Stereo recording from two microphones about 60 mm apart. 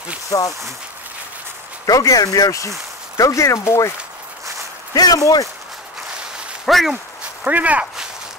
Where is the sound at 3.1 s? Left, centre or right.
Left.